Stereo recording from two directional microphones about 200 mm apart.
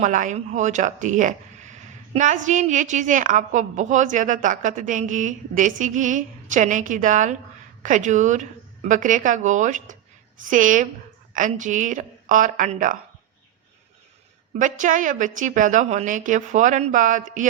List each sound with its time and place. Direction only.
0.0 s speech: 40° right (ahead or behind)
14.5 s speech: 40° right (ahead or behind)